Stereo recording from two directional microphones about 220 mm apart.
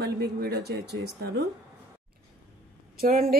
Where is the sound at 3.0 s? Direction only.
40° right (ahead or behind).